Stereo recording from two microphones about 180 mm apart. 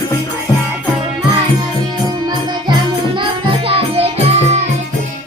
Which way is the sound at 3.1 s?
30° right (ahead or behind).